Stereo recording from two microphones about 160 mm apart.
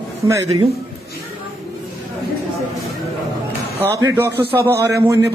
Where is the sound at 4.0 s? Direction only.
15° right (ahead or behind).